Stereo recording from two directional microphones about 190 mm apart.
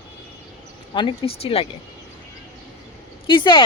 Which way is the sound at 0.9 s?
25° left (ahead or behind).